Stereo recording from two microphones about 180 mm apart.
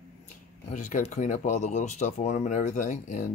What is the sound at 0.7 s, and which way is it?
Speech, 40° left (ahead or behind).